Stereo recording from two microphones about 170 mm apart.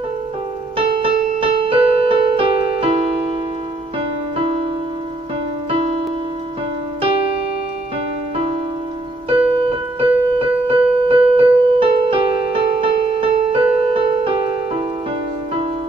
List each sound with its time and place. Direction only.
0.7 s keyboard: 35° right (ahead or behind)
4.4 s music: 35° right (ahead or behind)
5.7 s music: 35° right (ahead or behind)
7.0 s keyboard: 35° right (ahead or behind)
9.6 s keyboard: 30° right (ahead or behind)